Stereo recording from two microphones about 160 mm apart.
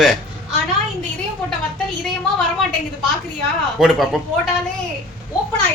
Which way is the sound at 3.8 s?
Centre (ahead or behind).